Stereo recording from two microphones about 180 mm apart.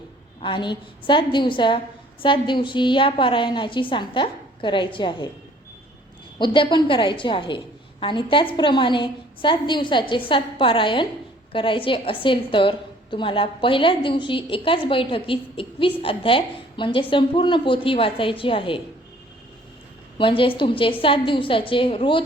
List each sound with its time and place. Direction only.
0.4 s a woman's voice: 25° left (ahead or behind)
6.4 s a woman's voice: 25° left (ahead or behind)
20.1 s a woman's voice: 30° left (ahead or behind)